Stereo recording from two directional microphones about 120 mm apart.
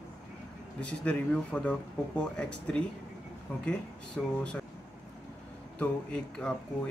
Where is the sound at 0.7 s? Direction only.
10° left (ahead or behind).